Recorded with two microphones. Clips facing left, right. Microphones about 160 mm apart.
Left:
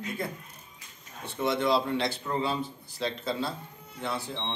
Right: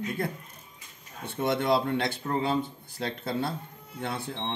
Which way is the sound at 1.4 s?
55° right (ahead or behind).